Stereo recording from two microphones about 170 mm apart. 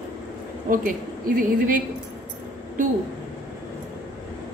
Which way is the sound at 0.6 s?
55° right (ahead or behind).